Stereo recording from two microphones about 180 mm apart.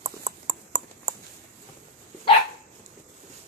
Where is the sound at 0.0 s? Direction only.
30° right (ahead or behind).